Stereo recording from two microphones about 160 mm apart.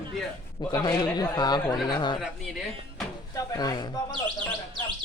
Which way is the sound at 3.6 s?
25° left (ahead or behind).